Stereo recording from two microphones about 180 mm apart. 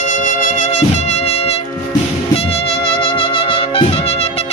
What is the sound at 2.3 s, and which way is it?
Trumpet, 35° left (ahead or behind).